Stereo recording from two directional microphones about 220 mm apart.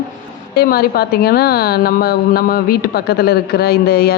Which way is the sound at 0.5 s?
45° left (ahead or behind).